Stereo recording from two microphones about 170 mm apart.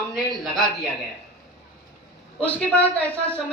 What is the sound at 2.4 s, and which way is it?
Speech, 10° left (ahead or behind).